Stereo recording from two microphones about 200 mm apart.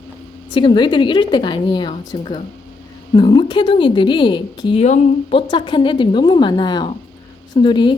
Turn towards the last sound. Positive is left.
turn(degrees=25)  # may be behind; listen again after turning